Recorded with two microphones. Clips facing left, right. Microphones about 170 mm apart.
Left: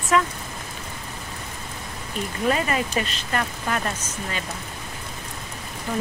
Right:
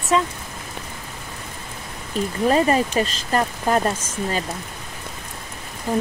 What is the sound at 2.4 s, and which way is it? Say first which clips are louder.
Speech: right 5 dB; 35° right (ahead or behind).